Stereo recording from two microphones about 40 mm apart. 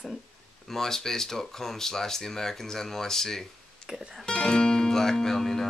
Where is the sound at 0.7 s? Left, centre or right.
Centre.